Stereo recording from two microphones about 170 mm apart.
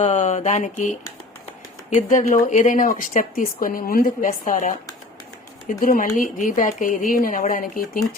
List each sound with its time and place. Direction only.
0.0 s speech: 40° left (ahead or behind)